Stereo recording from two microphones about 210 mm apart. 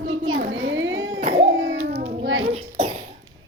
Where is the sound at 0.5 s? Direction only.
65° right (ahead or behind).